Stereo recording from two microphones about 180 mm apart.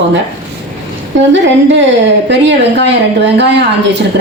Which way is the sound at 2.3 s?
70° right (ahead or behind).